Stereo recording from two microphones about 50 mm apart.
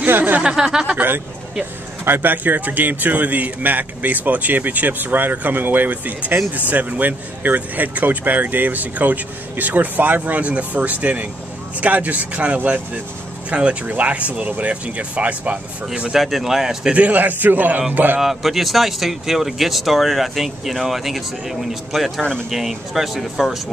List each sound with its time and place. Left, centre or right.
0.0 s a sound: right
0.4 s speech: centre
0.9 s a man's voice: right
2.3 s speech: right
16.1 s speech: centre
16.9 s speech: right
18.2 s speech: centre